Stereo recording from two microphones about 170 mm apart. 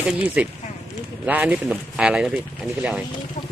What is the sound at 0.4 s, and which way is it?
Speech, 5° right (ahead or behind).